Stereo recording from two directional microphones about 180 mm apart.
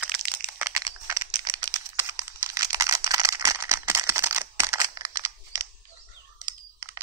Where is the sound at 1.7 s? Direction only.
15° right (ahead or behind).